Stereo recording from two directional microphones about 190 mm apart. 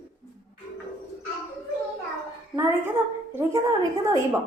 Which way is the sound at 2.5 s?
15° right (ahead or behind).